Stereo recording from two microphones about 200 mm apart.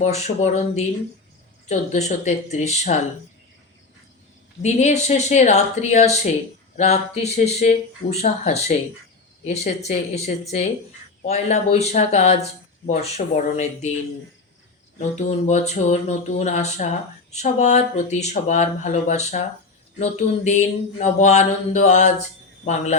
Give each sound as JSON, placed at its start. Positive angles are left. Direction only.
{"t": 0.0, "sound": "speech", "side_deg": 35}
{"t": 4.6, "sound": "speech", "side_deg": 35}
{"t": 12.4, "sound": "speech", "side_deg": 45}
{"t": 13.0, "sound": "speech", "side_deg": 35}
{"t": 14.9, "sound": "speech", "side_deg": 35}